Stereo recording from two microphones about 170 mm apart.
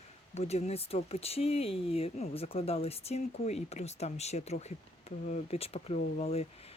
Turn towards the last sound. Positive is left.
turn(degrees=35)  # may be behind; listen again after turning